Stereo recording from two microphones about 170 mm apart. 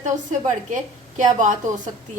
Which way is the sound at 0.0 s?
45° right (ahead or behind).